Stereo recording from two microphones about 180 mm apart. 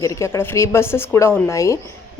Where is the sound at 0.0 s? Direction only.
15° left (ahead or behind).